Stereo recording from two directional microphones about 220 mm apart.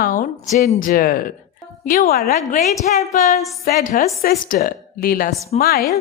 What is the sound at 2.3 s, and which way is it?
A woman's voice, 30° left (ahead or behind).